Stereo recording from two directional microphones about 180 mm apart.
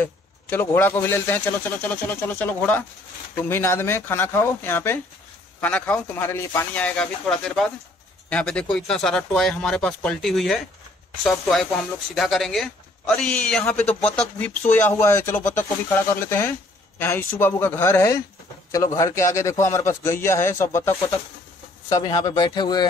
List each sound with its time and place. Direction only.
0.0 s speech: 10° left (ahead or behind)